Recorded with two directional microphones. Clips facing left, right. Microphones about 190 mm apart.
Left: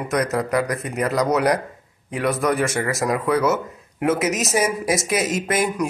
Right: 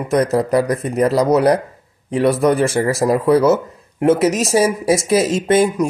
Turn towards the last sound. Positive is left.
turn(degrees=-30)  # may be behind; listen again after turning